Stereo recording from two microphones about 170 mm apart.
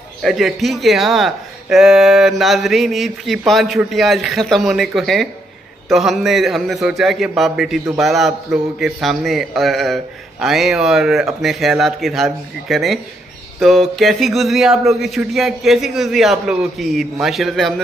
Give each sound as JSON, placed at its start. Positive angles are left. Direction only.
{"t": 0.2, "sound": "speech", "side_deg": 0}